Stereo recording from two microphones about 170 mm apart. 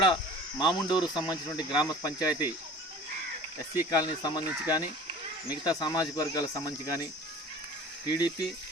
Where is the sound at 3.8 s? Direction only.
25° left (ahead or behind).